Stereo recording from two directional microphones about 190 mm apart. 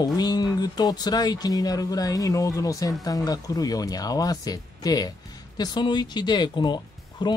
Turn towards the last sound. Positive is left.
turn(degrees=25)  # may be behind; listen again after turning